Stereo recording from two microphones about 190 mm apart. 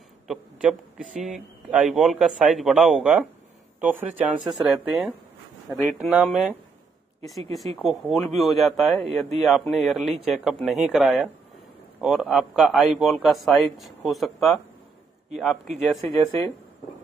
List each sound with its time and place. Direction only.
0.3 s a sound: 5° right (ahead or behind)
1.2 s speech: 5° right (ahead or behind)
7.5 s speech: centre (ahead or behind)
16.3 s speech: 15° left (ahead or behind)